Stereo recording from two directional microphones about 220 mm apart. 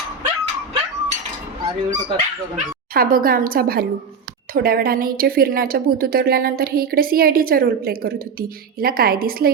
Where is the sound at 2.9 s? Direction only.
40° right (ahead or behind).